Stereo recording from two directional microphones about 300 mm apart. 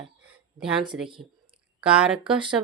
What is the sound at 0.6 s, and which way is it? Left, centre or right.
Speech, centre.